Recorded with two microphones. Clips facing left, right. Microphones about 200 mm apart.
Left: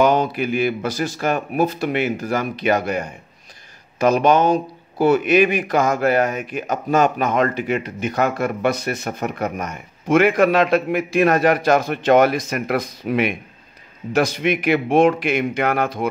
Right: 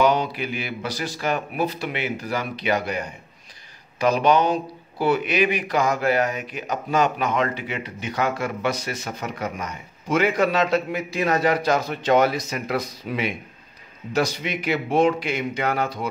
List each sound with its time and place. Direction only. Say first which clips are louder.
0.0 s speech: left 4 dB; 50° left (ahead or behind)
4.0 s speech: left 3 dB; 45° left (ahead or behind)